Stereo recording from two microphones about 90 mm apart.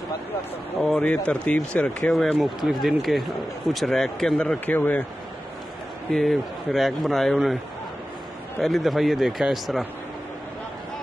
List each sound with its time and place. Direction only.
0.9 s speech: 15° left (ahead or behind)
2.1 s a man's voice: centre (ahead or behind)
4.6 s speech: 20° left (ahead or behind)
6.1 s a man's voice: centre (ahead or behind)
8.6 s a man's voice: centre (ahead or behind)